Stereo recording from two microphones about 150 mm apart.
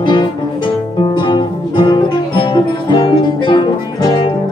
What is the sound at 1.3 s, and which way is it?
Music, 35° left (ahead or behind).